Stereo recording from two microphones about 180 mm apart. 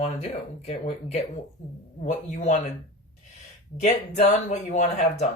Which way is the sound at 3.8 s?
40° left (ahead or behind).